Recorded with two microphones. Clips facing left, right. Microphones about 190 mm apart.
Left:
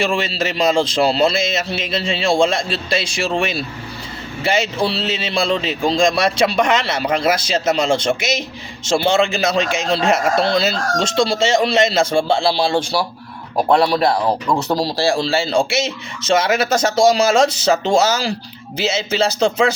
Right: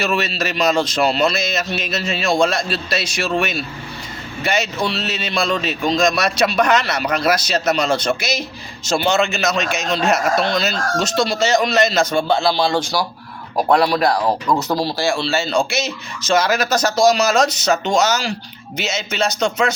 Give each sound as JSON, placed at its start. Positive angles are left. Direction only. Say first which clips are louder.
{"t": 0.0, "sound": "a man's voice", "louder": "left 1 dB", "side_deg": 30}